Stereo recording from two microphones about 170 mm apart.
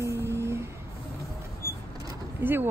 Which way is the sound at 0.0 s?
15° right (ahead or behind).